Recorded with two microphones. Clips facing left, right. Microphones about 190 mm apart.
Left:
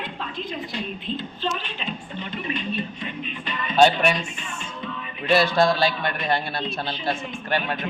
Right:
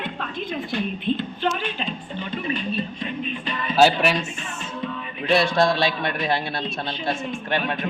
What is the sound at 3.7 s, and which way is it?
Speech, 5° right (ahead or behind).